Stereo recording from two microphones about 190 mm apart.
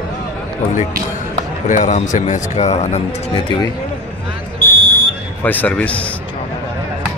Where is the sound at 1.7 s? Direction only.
40° left (ahead or behind).